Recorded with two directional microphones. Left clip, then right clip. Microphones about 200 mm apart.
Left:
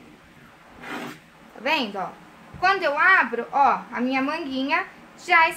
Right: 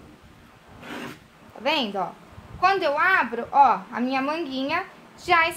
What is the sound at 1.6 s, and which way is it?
A child's voice, 35° right (ahead or behind).